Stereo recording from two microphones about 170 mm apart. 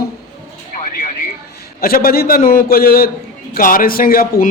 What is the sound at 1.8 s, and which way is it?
A man's voice, 60° left (ahead or behind).